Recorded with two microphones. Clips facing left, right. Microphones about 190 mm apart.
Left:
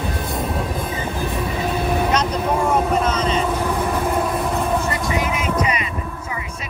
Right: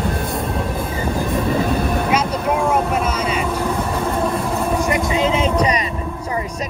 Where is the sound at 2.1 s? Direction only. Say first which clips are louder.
Right 1 dB; 10° right (ahead or behind).